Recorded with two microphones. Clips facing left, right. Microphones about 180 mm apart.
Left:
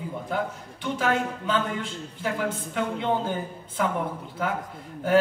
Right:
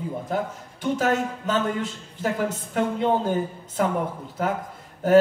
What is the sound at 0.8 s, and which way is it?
A man's voice, 40° right (ahead or behind).